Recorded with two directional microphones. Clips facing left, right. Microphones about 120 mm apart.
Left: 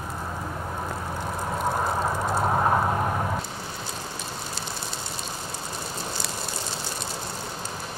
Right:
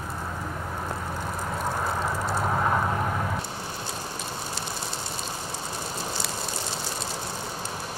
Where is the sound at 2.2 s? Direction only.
25° left (ahead or behind).